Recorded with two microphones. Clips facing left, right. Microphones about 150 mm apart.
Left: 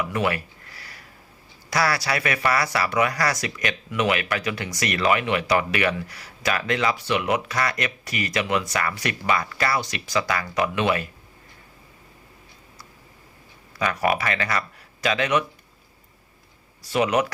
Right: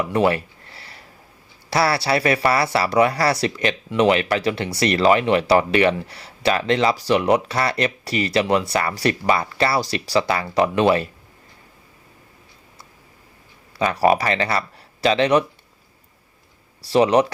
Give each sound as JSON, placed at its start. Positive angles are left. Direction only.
{"t": 0.0, "sound": "a sound", "side_deg": -30}
{"t": 1.7, "sound": "speech", "side_deg": -30}
{"t": 13.7, "sound": "speech", "side_deg": -30}
{"t": 16.8, "sound": "speech", "side_deg": -30}